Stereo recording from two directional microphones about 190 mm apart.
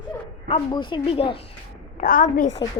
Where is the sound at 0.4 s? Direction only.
25° left (ahead or behind).